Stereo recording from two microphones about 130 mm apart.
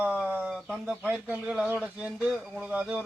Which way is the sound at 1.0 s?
15° right (ahead or behind).